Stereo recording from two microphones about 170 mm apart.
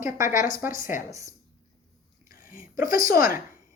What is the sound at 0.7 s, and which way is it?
Speech, 50° left (ahead or behind).